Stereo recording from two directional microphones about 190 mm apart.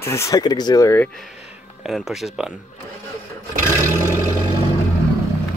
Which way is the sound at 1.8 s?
Centre (ahead or behind).